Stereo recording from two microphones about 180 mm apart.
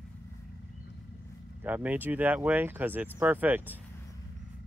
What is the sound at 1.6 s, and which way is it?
Speech, 10° right (ahead or behind).